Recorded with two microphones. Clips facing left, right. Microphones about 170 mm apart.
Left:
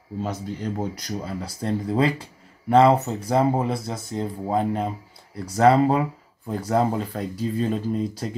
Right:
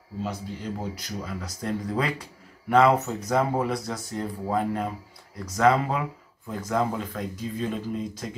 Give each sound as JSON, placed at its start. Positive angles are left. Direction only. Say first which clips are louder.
{"t": 0.2, "sound": "speech", "louder": "left 3 dB", "side_deg": 45}
{"t": 5.4, "sound": "speech", "louder": "left 5 dB", "side_deg": 35}